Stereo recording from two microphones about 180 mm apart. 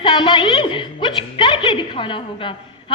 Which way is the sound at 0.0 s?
25° left (ahead or behind).